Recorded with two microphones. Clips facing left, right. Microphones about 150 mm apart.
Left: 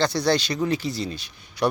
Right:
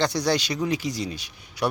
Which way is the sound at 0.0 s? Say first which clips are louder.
Left 2 dB; 15° right (ahead or behind).